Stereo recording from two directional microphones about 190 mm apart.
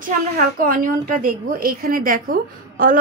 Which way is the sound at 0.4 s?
45° right (ahead or behind).